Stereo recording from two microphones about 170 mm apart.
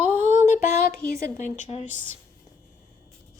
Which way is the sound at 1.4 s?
40° left (ahead or behind).